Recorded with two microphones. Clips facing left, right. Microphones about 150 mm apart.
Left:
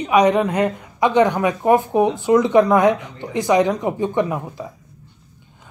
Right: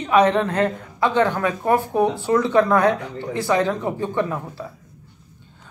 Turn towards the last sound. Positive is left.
turn(degrees=15)  # may be behind; listen again after turning